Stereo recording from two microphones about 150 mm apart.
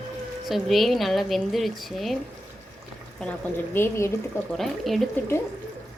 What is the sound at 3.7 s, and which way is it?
Speech, 15° left (ahead or behind).